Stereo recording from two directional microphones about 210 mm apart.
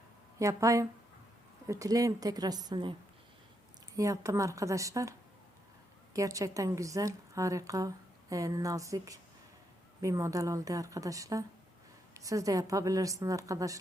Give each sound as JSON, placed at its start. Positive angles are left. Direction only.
{"t": 0.3, "sound": "a woman's voice", "side_deg": -15}
{"t": 3.9, "sound": "a woman's voice", "side_deg": -15}
{"t": 6.1, "sound": "a woman's voice", "side_deg": -15}